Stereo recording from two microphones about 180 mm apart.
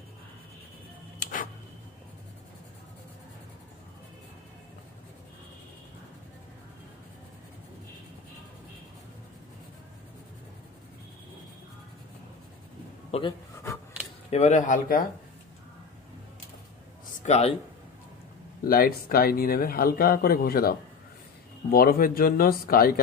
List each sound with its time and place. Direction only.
1.2 s tick-tock: 50° left (ahead or behind)
13.1 s speech: 35° left (ahead or behind)
14.3 s speech: 40° left (ahead or behind)
17.2 s speech: 35° left (ahead or behind)
18.6 s speech: 55° left (ahead or behind)